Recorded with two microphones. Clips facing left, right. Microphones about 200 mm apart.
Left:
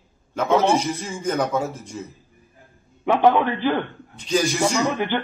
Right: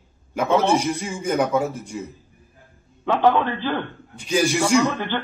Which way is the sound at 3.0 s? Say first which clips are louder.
Left 1 dB; 15° left (ahead or behind).